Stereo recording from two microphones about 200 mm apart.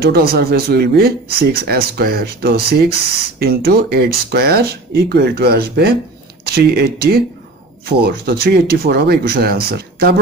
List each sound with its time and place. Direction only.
0.0 s speech: 50° right (ahead or behind)